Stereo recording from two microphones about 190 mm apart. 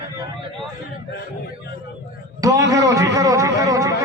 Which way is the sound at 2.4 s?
15° right (ahead or behind).